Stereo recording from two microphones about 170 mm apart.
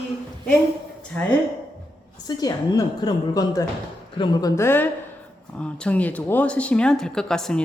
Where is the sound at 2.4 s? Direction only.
20° left (ahead or behind).